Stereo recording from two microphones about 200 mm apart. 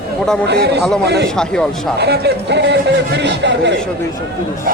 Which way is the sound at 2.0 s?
55° right (ahead or behind).